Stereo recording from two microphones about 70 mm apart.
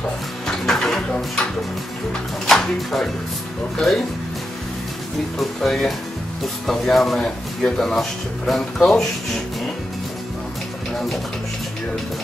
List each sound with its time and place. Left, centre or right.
0.5 s a sound: centre
2.4 s speech: centre
5.4 s speech: centre